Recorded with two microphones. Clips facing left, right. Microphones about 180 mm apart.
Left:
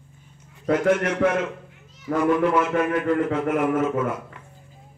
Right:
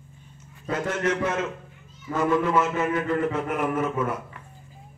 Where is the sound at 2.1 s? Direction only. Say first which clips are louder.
Left 4 dB; 80° left.